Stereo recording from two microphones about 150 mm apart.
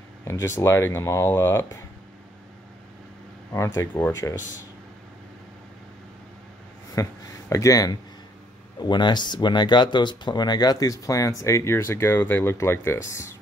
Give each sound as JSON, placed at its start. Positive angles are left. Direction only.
{"t": 0.3, "sound": "speech", "side_deg": 20}
{"t": 3.5, "sound": "speech", "side_deg": 20}
{"t": 6.9, "sound": "speech", "side_deg": 20}